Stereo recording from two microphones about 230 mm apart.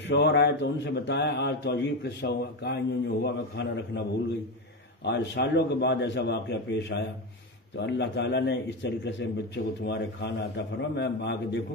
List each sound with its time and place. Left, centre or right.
0.0 s a man's voice: left
5.0 s a man's voice: left